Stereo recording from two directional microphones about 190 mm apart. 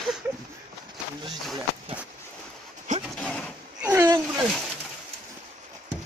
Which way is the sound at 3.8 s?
10° right (ahead or behind).